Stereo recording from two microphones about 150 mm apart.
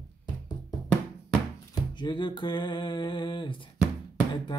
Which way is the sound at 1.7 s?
30° left (ahead or behind).